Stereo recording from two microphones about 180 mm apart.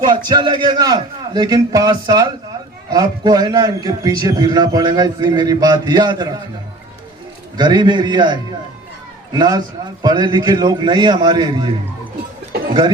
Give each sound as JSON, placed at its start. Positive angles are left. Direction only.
{"t": 0.0, "sound": "a man's voice", "side_deg": -25}
{"t": 7.5, "sound": "a man's voice", "side_deg": -25}